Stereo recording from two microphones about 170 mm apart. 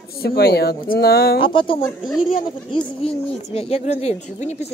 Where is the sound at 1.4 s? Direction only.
30° left (ahead or behind).